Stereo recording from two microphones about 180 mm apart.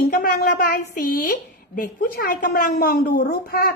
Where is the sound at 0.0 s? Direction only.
55° left (ahead or behind).